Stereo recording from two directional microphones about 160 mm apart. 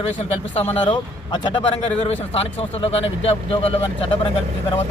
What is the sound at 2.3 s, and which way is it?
Speech, 35° left (ahead or behind).